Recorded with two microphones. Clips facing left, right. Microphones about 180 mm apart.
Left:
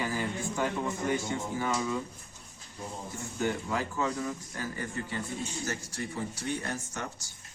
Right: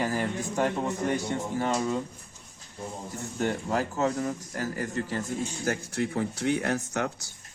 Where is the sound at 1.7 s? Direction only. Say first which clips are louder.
Right 4 dB; 40° right (ahead or behind).